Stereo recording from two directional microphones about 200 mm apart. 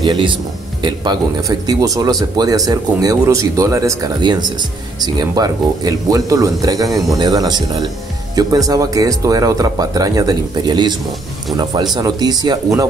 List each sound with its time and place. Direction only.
0.0 s speech: 25° right (ahead or behind)